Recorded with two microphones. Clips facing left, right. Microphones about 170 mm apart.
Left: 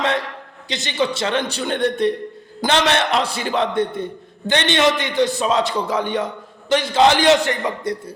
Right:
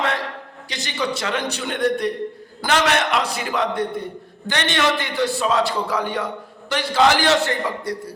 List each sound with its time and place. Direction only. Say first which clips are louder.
0.7 s a man's voice: left 4 dB; 25° left (ahead or behind)